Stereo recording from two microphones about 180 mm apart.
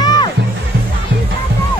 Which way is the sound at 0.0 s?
20° left (ahead or behind).